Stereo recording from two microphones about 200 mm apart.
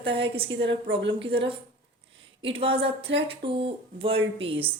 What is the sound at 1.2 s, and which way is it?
Speech, 25° right (ahead or behind).